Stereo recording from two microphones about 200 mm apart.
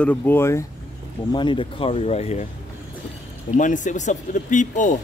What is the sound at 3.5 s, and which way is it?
Speech, 40° left (ahead or behind).